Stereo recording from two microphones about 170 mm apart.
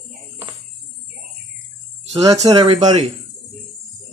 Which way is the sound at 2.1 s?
35° right (ahead or behind).